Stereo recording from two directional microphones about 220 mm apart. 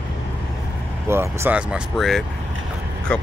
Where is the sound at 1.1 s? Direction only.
10° right (ahead or behind).